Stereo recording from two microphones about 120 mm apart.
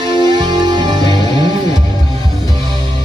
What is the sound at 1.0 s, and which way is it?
Music, 35° left (ahead or behind).